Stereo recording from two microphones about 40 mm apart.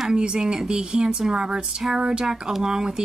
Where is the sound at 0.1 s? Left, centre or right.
Centre.